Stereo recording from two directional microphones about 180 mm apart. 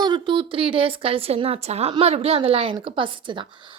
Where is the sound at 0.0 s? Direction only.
25° right (ahead or behind).